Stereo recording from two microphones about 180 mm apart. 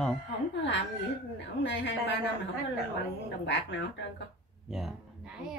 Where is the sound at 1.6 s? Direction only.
75° left (ahead or behind).